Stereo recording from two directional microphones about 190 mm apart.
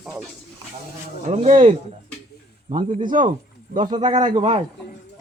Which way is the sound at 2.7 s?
25° right (ahead or behind).